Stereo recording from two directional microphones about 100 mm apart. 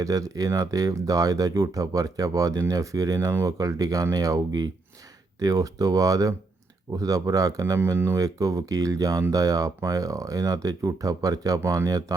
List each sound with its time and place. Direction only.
0.0 s speech: 35° right (ahead or behind)